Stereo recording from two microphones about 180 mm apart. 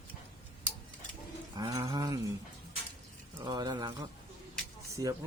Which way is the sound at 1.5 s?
20° right (ahead or behind).